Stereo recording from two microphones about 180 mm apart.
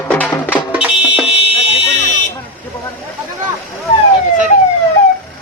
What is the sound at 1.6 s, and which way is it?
Buzzer, 35° left (ahead or behind).